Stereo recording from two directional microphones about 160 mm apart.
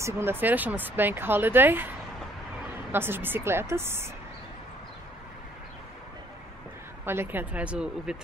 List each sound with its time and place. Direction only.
0.0 s speech: 15° right (ahead or behind)
7.1 s speech: 15° right (ahead or behind)